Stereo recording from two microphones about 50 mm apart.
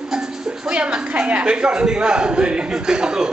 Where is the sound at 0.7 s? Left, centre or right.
Right.